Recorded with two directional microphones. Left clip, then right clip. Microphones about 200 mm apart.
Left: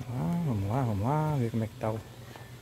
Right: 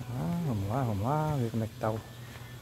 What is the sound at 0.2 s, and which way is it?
Speech, 20° left (ahead or behind).